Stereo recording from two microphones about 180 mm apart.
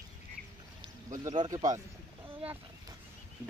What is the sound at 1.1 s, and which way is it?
Speech, 45° right (ahead or behind).